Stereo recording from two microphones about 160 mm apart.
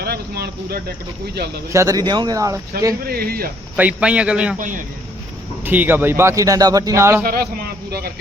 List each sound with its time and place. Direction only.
0.0 s speech: 80° right
1.7 s speech: 20° right (ahead or behind)
3.1 s speech: 70° right (ahead or behind)
3.8 s speech: 10° right (ahead or behind)
5.6 s speech: 10° right (ahead or behind)
7.3 s a man's voice: 70° right (ahead or behind)